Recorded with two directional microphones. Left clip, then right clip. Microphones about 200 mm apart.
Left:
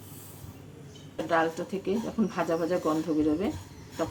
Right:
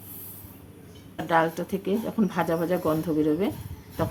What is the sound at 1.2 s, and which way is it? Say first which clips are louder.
Speech: right 4 dB; 35° right (ahead or behind).